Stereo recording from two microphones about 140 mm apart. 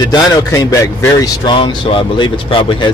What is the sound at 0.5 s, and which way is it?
Speech, 25° left (ahead or behind).